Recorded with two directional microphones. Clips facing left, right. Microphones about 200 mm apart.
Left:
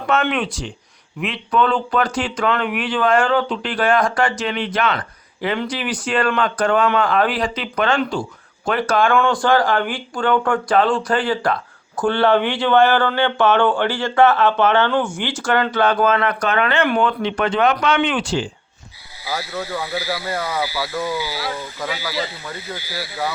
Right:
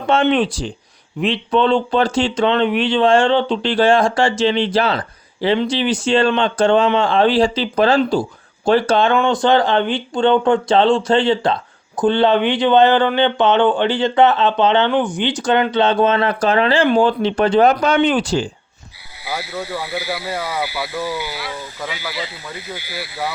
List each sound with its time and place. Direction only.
0.0 s speech: 30° right (ahead or behind)
19.2 s speech: 5° right (ahead or behind)